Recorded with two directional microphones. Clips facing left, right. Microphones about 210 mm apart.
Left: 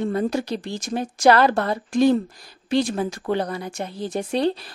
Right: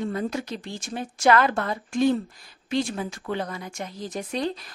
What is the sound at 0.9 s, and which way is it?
Speech, 40° left (ahead or behind).